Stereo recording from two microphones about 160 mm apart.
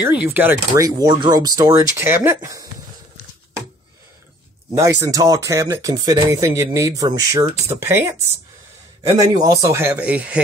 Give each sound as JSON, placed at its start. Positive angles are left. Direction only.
{"t": 0.1, "sound": "speech", "side_deg": -10}
{"t": 4.7, "sound": "speech", "side_deg": -20}
{"t": 9.3, "sound": "speech", "side_deg": -20}